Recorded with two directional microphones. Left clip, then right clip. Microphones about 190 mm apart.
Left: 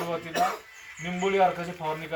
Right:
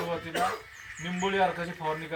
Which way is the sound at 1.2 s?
15° left (ahead or behind).